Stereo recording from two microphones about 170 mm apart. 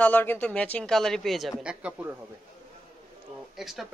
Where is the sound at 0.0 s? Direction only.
10° left (ahead or behind); by 2.1 s 10° right (ahead or behind).